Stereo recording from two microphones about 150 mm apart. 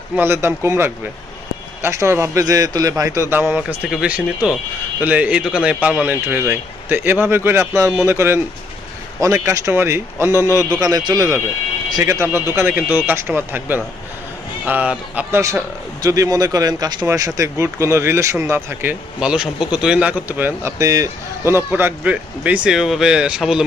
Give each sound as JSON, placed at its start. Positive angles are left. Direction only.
{"t": 0.2, "sound": "a man's voice", "side_deg": -15}